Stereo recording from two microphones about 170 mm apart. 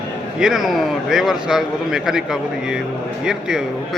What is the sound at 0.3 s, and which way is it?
Speech, 5° right (ahead or behind).